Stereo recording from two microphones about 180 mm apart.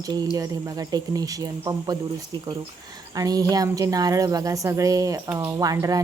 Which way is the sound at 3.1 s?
20° right (ahead or behind).